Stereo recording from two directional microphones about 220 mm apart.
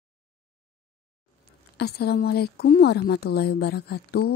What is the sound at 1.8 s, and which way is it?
Speech, 45° left (ahead or behind).